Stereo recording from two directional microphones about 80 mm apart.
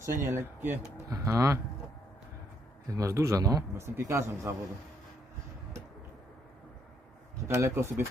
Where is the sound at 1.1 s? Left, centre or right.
Right.